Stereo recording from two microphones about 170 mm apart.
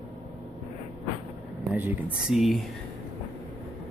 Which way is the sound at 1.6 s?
10° right (ahead or behind).